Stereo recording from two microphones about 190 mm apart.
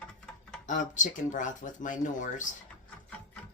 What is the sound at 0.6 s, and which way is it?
Speech, 40° left (ahead or behind).